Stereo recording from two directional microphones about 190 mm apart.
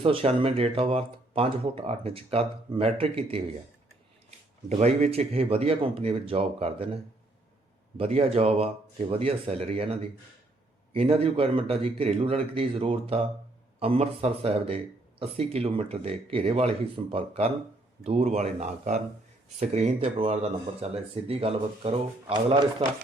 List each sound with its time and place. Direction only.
0.0 s speech: 30° right (ahead or behind)
4.7 s speech: 35° right (ahead or behind)